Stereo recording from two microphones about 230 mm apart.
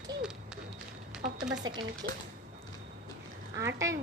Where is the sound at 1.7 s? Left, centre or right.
Right.